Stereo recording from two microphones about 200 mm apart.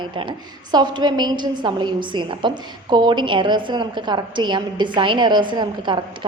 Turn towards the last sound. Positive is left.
turn(degrees=-25)  # may be behind; listen again after turning